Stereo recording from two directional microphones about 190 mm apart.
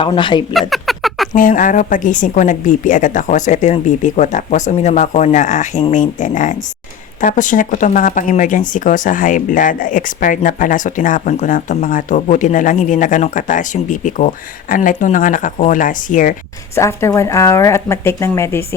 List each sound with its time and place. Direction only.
0.0 s speech: 25° left (ahead or behind)
0.7 s a sound: centre (ahead or behind)
1.4 s a woman's voice: 45° left (ahead or behind)
16.7 s speech: 15° left (ahead or behind)